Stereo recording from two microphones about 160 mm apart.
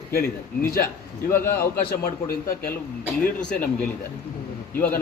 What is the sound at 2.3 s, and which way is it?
Speech, 65° left (ahead or behind).